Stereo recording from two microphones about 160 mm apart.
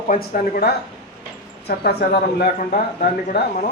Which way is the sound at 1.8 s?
80° left.